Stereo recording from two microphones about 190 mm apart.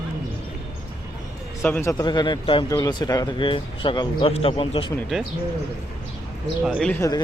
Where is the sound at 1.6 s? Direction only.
10° left (ahead or behind); by 4.9 s 30° left (ahead or behind).